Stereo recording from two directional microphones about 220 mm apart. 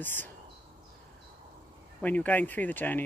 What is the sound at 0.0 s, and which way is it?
Speech, 10° left (ahead or behind).